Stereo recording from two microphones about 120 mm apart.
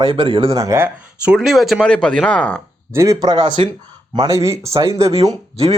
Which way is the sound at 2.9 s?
25° right (ahead or behind).